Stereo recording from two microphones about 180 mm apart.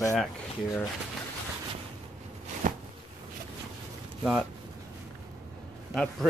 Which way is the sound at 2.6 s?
50° right (ahead or behind).